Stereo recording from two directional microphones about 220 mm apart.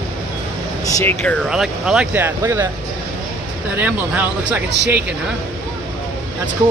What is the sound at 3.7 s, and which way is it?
Speech, 5° right (ahead or behind).